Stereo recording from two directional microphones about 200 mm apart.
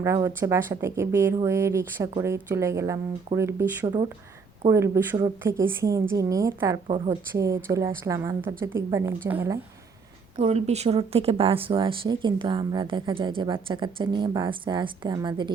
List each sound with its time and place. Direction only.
0.0 s a woman's voice: 15° right (ahead or behind)
6.8 s speech: 30° right (ahead or behind)
7.3 s a woman's voice: 15° right (ahead or behind)
10.3 s speech: 30° right (ahead or behind)